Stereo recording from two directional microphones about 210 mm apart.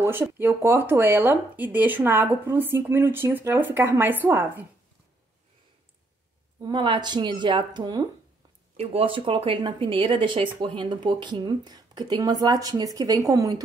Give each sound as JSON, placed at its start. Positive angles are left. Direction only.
{"t": 0.0, "sound": "speech", "side_deg": -10}
{"t": 6.6, "sound": "speech", "side_deg": -20}